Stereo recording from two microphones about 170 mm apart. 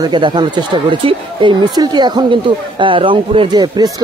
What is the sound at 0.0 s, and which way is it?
Speech, 25° right (ahead or behind).